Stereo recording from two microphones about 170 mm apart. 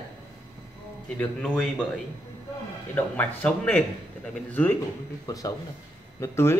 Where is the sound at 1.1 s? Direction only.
5° left (ahead or behind).